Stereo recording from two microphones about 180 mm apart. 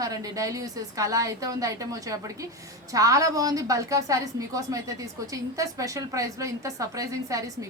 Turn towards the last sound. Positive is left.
turn(degrees=-20)  # may be behind; listen again after turning